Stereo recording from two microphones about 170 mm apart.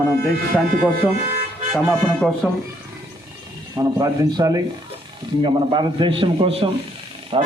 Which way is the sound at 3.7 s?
20° right (ahead or behind).